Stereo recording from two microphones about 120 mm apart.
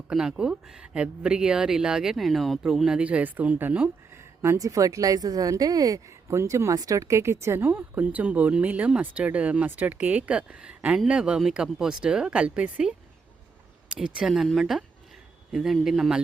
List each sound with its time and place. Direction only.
0.1 s speech: 5° right (ahead or behind)
4.4 s speech: 30° right (ahead or behind); by 12.9 s 10° right (ahead or behind)
13.9 s speech: 5° right (ahead or behind)